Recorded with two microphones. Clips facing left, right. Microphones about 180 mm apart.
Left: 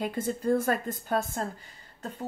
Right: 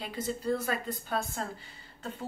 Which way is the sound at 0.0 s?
50° left (ahead or behind).